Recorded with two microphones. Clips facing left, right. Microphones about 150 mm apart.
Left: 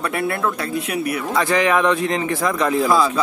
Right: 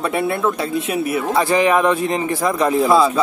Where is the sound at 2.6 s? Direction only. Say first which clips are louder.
Right 3 dB; 25° right (ahead or behind).